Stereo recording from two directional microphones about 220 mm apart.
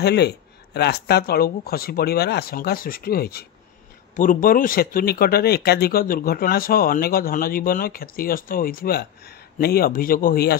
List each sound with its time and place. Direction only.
0.0 s speech: 50° left (ahead or behind)